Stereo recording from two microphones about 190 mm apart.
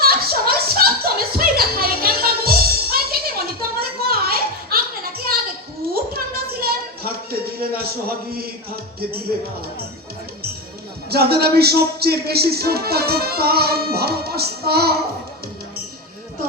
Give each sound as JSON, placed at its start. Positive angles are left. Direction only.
{"t": 0.0, "sound": "chuckle", "side_deg": -55}
{"t": 3.8, "sound": "a sound", "side_deg": -55}
{"t": 8.3, "sound": "music", "side_deg": -55}
{"t": 11.1, "sound": "speech", "side_deg": -55}